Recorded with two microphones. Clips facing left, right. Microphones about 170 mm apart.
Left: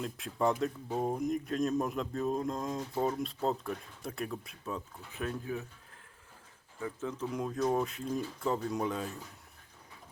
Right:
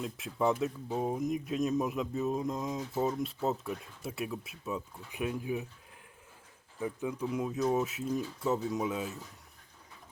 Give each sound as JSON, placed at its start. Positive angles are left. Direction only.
{"t": 0.0, "sound": "speech", "side_deg": 0}
{"t": 6.7, "sound": "speech", "side_deg": -15}